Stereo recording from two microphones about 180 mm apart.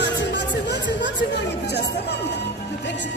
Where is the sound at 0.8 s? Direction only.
75° left (ahead or behind).